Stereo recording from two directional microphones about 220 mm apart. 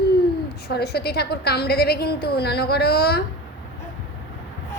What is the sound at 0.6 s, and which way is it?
A woman's voice, 45° left (ahead or behind).